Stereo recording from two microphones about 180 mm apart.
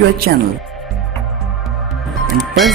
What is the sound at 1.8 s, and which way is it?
Music, centre (ahead or behind).